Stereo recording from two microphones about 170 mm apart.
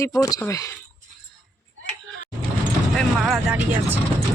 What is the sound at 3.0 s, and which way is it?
Speech, centre (ahead or behind).